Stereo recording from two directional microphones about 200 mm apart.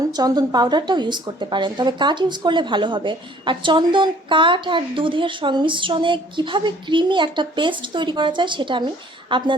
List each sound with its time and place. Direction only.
0.2 s speech: 20° right (ahead or behind)